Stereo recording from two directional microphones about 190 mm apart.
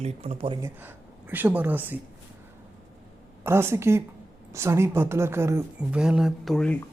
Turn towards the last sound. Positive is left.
turn(degrees=5)  # may be behind; listen again after turning